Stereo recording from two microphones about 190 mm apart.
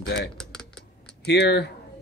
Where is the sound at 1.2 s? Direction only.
60° left (ahead or behind).